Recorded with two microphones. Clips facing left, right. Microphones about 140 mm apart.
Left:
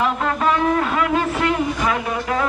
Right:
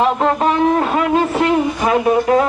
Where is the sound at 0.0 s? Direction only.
30° right (ahead or behind).